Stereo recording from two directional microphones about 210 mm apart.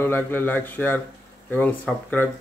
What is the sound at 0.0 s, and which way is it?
Speech, 10° left (ahead or behind).